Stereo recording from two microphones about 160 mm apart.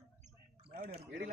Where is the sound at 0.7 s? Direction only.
70° right (ahead or behind).